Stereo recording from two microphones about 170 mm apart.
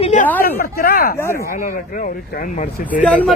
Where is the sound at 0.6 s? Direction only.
60° left (ahead or behind).